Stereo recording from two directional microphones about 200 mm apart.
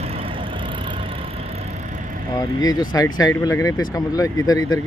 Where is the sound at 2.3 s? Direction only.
20° left (ahead or behind).